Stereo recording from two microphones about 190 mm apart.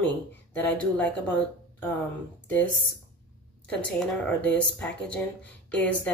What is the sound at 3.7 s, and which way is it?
Speech, 5° left (ahead or behind).